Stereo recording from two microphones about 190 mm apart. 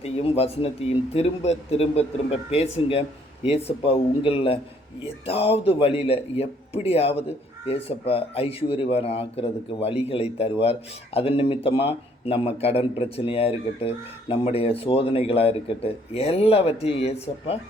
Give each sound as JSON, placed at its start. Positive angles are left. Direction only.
{"t": 0.0, "sound": "speech", "side_deg": 30}